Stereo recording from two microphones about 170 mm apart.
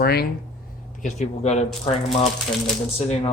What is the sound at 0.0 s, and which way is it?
Speech, 65° left (ahead or behind).